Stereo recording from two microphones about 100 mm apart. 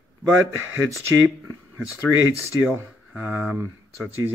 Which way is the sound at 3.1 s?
15° right (ahead or behind).